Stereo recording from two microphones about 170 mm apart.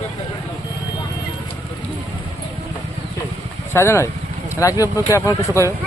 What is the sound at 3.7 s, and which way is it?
Speech, 15° left (ahead or behind).